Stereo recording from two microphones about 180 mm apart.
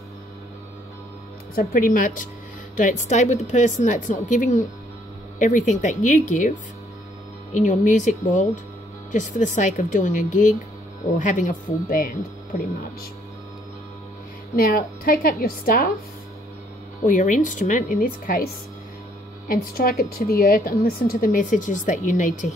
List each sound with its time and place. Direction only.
1.5 s a woman's voice: 55° left (ahead or behind)
14.5 s a woman's voice: 55° left (ahead or behind)
17.0 s a woman's voice: 45° left (ahead or behind)
19.4 s a woman's voice: 55° left (ahead or behind)